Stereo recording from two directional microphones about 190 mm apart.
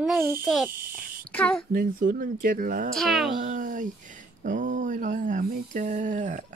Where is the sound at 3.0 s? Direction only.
Centre (ahead or behind).